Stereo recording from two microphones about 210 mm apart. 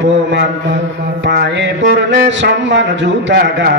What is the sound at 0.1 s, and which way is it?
Mantra, 60° right (ahead or behind).